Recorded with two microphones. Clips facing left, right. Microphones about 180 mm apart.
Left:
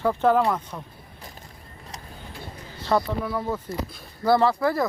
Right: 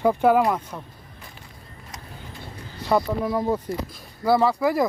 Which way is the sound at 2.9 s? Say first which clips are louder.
Right 2 dB; 15° right (ahead or behind).